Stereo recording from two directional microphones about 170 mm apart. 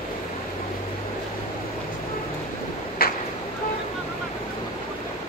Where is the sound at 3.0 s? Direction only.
60° left (ahead or behind).